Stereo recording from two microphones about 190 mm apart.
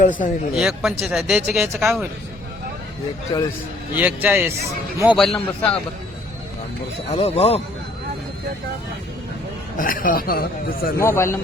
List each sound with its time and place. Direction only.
0.0 s speech: 45° left (ahead or behind)
0.5 s speech: centre (ahead or behind)
3.3 s a man's voice: 25° left (ahead or behind)
3.9 s a man's voice: 10° right (ahead or behind)
5.1 s speech: centre (ahead or behind)
7.1 s speech: 30° left (ahead or behind)
9.7 s speech: 45° left (ahead or behind)
11.0 s a man's voice: 15° left (ahead or behind)